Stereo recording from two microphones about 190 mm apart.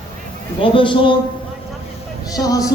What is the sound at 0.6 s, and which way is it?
Speech, 25° left (ahead or behind).